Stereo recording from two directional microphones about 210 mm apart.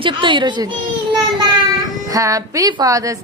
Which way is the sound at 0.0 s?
25° right (ahead or behind).